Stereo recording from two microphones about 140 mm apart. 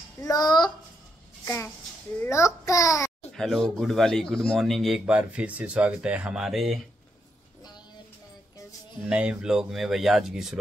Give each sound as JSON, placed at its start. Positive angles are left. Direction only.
{"t": 0.2, "sound": "a child's voice", "side_deg": 30}
{"t": 1.4, "sound": "a child's voice", "side_deg": 20}
{"t": 3.3, "sound": "speech", "side_deg": 5}
{"t": 9.1, "sound": "speech", "side_deg": -10}